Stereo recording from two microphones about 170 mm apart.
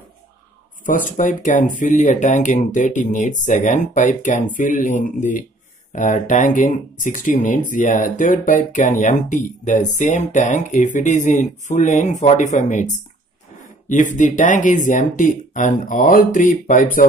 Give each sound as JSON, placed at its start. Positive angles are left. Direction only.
{"t": 0.8, "sound": "speech", "side_deg": 50}